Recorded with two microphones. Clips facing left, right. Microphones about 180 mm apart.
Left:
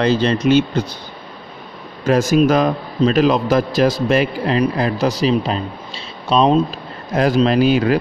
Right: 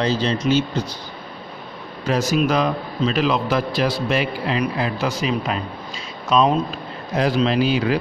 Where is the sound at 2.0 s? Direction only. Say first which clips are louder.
Left 6 dB; 50° left (ahead or behind); by 6.8 s 30° left (ahead or behind).